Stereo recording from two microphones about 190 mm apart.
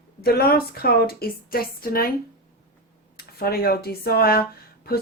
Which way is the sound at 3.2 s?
55° left (ahead or behind).